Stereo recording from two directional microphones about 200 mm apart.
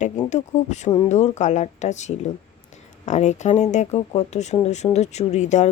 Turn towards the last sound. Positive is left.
turn(degrees=35)  # may be behind; listen again after turning